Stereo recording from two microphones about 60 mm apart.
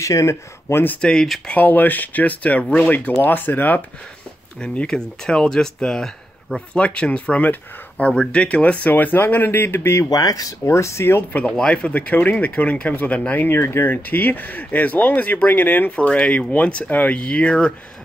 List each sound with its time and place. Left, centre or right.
0.0 s speech: left
1.0 s speech: centre
1.5 s speech: left
4.6 s speech: centre; by 9.9 s left
10.0 s speech: left
10.7 s speech: left
11.5 s speech: centre